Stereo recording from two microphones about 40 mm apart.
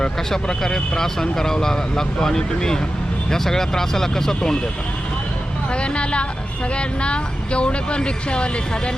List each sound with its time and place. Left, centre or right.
0.0 s speech: centre
5.7 s speech: left